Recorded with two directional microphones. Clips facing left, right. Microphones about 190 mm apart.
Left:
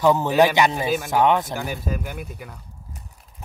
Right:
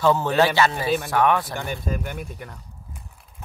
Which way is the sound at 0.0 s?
15° left (ahead or behind).